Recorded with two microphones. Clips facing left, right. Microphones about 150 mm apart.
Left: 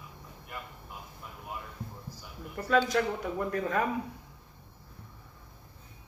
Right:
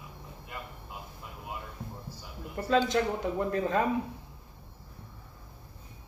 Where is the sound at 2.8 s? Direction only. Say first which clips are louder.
Right 1 dB; 25° right (ahead or behind).